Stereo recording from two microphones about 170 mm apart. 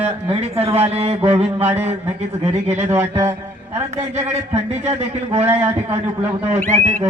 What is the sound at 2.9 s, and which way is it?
Music, 15° right (ahead or behind).